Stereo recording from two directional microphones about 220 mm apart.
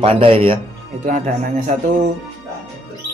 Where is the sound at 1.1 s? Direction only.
35° right (ahead or behind).